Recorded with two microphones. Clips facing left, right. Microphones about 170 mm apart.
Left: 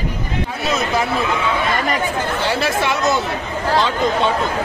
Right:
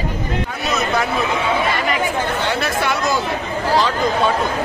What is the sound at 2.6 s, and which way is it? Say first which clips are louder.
Speech: left 2 dB; 25° left (ahead or behind).